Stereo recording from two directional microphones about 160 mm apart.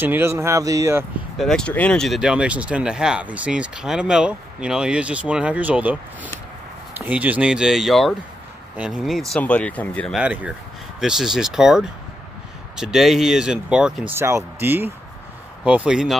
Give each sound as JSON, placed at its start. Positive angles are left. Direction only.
{"t": 0.0, "sound": "speech", "side_deg": -15}
{"t": 1.4, "sound": "speech", "side_deg": 5}
{"t": 9.3, "sound": "speech", "side_deg": 10}
{"t": 10.1, "sound": "speech", "side_deg": -10}